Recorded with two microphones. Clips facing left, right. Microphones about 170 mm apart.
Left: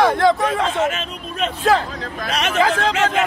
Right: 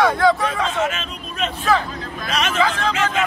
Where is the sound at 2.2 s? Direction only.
60° left (ahead or behind).